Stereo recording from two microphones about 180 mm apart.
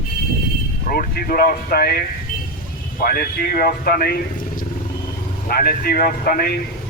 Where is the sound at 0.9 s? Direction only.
55° left (ahead or behind).